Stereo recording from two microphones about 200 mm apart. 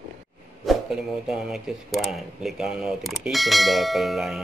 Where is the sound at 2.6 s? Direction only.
Centre (ahead or behind).